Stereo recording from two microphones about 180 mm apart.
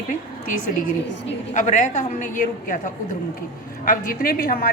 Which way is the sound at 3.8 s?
50° left (ahead or behind).